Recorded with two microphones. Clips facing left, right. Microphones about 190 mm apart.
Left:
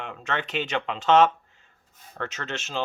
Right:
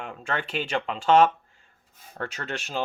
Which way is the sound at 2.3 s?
10° right (ahead or behind).